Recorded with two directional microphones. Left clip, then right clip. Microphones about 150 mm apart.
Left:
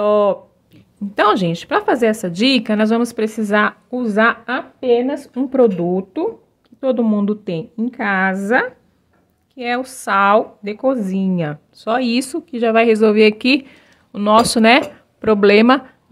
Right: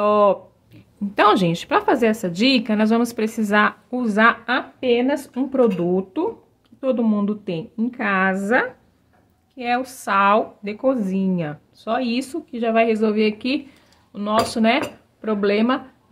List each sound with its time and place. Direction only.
0.0 s speech: 15° left (ahead or behind); by 4.8 s 30° left (ahead or behind)
4.9 s a woman's voice: 15° left (ahead or behind)
6.8 s a woman's voice: 30° left (ahead or behind); by 15.8 s 50° left (ahead or behind)